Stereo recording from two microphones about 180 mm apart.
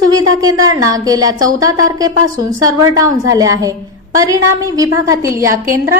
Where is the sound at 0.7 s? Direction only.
20° right (ahead or behind).